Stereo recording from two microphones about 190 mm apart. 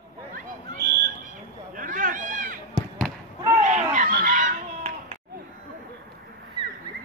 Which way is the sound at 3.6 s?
40° right (ahead or behind).